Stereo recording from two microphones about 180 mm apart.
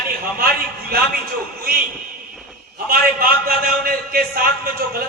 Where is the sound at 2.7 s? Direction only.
55° right (ahead or behind).